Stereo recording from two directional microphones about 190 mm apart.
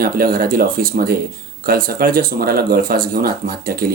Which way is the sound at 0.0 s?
50° right (ahead or behind).